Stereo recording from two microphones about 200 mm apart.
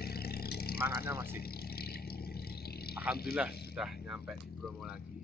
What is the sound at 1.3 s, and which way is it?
Vehicle, 50° left (ahead or behind).